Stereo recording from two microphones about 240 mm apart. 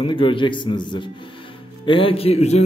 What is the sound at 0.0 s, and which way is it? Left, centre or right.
A man's voice, left.